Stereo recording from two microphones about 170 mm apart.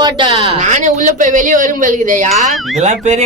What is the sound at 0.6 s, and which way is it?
A woman's voice, 45° right (ahead or behind).